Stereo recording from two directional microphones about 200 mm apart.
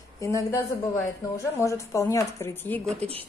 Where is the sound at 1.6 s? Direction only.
15° left (ahead or behind).